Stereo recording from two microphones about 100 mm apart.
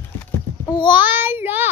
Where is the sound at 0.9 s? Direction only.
20° right (ahead or behind).